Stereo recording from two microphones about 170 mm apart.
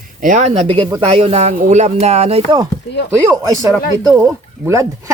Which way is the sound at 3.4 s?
20° right (ahead or behind).